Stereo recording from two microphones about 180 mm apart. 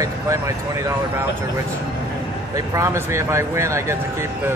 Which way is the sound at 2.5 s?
15° right (ahead or behind).